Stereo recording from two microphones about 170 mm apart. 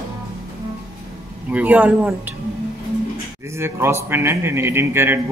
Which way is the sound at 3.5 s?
15° right (ahead or behind).